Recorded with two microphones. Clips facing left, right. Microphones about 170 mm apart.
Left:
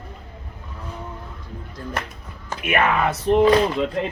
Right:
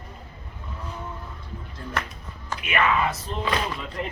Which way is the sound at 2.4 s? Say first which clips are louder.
Left 3 dB; 50° left (ahead or behind).